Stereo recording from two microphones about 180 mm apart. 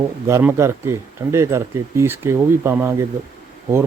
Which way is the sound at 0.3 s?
15° right (ahead or behind).